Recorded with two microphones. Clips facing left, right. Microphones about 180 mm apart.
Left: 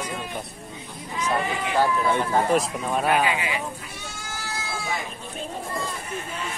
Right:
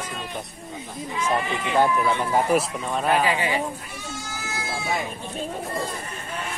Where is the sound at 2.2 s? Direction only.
10° right (ahead or behind).